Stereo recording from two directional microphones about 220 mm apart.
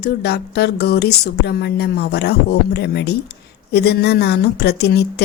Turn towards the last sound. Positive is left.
turn(degrees=50)  # may be behind; listen again after turning